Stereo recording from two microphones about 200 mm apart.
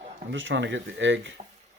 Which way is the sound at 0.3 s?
65° right (ahead or behind).